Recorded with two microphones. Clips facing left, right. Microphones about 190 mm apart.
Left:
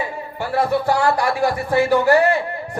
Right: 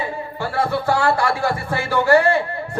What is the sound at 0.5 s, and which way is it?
Speech, 20° left (ahead or behind).